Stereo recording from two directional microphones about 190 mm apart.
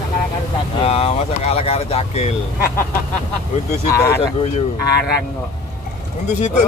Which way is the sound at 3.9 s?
15° left (ahead or behind).